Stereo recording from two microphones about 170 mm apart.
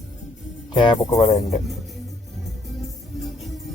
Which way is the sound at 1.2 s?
40° left (ahead or behind).